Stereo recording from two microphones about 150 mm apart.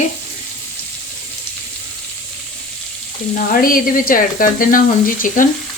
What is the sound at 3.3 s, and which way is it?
Speech, 70° left (ahead or behind).